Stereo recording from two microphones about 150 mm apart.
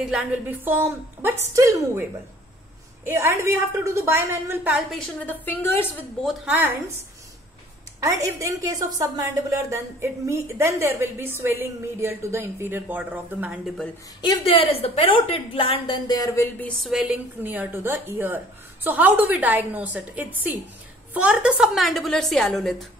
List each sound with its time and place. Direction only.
0.0 s a woman's voice: 5° right (ahead or behind)
3.1 s a woman's voice: 15° right (ahead or behind)
4.7 s a woman's voice: 5° left (ahead or behind)
6.2 s a woman's voice: 10° right (ahead or behind)
8.0 s a woman's voice: 20° right (ahead or behind)
14.2 s a woman's voice: 35° left (ahead or behind)
16.5 s a woman's voice: 5° left (ahead or behind)